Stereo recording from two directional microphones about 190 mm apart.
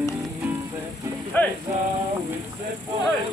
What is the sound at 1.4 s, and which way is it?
Speech, 10° left (ahead or behind).